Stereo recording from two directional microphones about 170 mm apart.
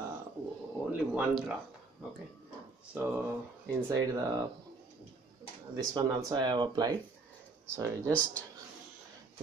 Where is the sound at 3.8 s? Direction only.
20° right (ahead or behind).